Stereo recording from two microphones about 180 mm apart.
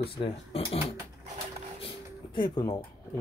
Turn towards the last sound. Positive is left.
turn(degrees=25)  # may be behind; listen again after turning